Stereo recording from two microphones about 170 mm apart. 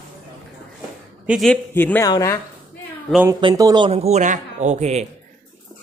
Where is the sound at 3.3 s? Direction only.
25° right (ahead or behind).